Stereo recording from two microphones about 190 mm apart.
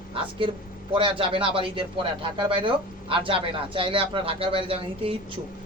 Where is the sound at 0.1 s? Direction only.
25° right (ahead or behind).